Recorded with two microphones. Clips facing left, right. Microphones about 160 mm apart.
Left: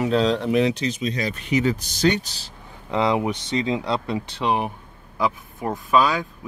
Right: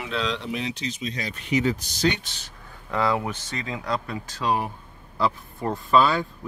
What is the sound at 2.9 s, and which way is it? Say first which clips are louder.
Speech: left 3 dB; 20° left (ahead or behind).